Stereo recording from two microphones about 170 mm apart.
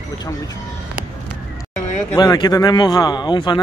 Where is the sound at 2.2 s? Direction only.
25° left (ahead or behind).